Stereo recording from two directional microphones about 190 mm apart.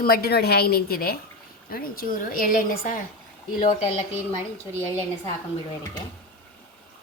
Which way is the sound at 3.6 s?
35° left (ahead or behind).